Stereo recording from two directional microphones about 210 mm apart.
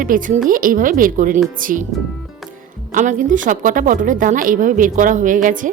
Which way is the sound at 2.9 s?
35° right (ahead or behind).